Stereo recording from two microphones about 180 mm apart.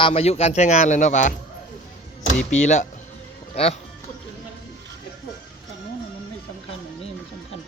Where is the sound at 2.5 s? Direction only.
40° left (ahead or behind).